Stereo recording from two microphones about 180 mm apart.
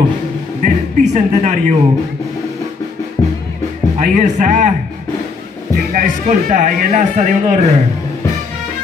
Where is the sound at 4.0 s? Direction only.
40° right (ahead or behind).